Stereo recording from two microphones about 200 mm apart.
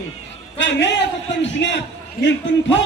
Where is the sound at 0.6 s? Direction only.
60° left (ahead or behind).